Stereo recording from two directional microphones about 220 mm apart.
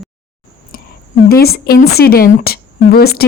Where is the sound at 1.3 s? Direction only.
45° left (ahead or behind).